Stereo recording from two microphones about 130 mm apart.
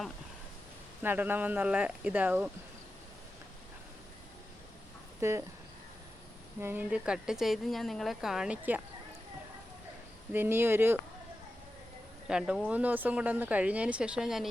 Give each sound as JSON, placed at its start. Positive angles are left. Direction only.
{"t": 1.0, "sound": "speech", "side_deg": -15}
{"t": 5.2, "sound": "speech", "side_deg": -20}
{"t": 6.6, "sound": "speech", "side_deg": -15}
{"t": 10.3, "sound": "speech", "side_deg": -15}
{"t": 12.3, "sound": "speech", "side_deg": -5}